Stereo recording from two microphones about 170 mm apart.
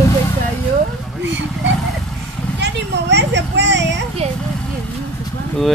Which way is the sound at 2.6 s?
90° right.